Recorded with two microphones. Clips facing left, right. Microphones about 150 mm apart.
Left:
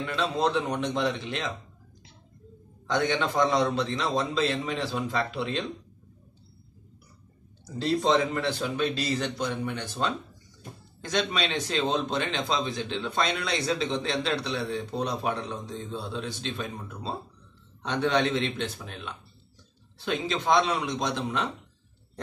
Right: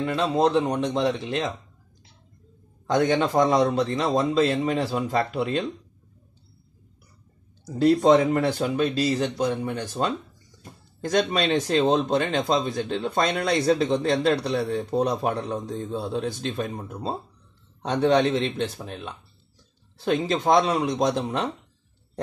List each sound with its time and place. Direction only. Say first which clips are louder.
0.0 s speech: right 5 dB; 40° right (ahead or behind)
2.9 s speech: right 5 dB; 40° right (ahead or behind)
7.8 s speech: right 7 dB; 50° right (ahead or behind)
11.0 s speech: right 5 dB; 45° right (ahead or behind)